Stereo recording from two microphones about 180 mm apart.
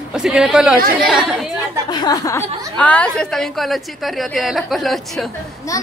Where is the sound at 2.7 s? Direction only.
5° left (ahead or behind).